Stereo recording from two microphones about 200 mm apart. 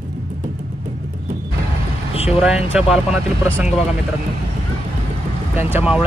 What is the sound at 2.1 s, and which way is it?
Vehicle, 30° left (ahead or behind).